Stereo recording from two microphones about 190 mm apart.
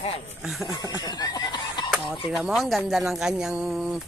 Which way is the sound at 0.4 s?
Centre (ahead or behind).